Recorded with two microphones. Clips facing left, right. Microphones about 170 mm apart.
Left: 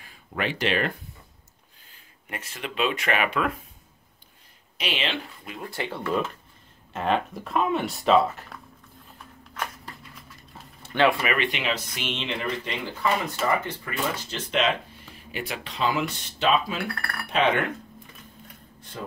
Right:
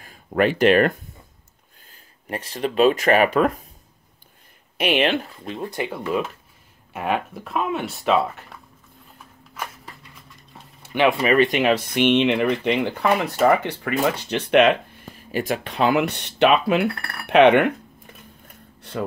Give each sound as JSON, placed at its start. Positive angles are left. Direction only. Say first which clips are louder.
{"t": 0.0, "sound": "speech", "louder": "right 10 dB", "side_deg": -45}
{"t": 2.2, "sound": "speech", "louder": "right 9 dB", "side_deg": -35}
{"t": 4.7, "sound": "speech", "louder": "right 10 dB", "side_deg": -55}
{"t": 5.4, "sound": "speech", "louder": "right 6 dB", "side_deg": -25}
{"t": 9.5, "sound": "a sound", "louder": "even", "side_deg": 0}
{"t": 11.2, "sound": "speech", "louder": "right 9 dB", "side_deg": -40}
{"t": 15.0, "sound": "speech", "louder": "right 10 dB", "side_deg": -45}
{"t": 18.8, "sound": "a sound", "louder": "right 10 dB", "side_deg": -70}